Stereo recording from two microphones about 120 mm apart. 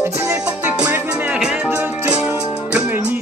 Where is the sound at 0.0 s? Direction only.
20° right (ahead or behind).